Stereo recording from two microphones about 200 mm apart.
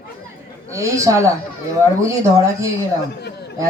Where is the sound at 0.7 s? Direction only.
15° right (ahead or behind).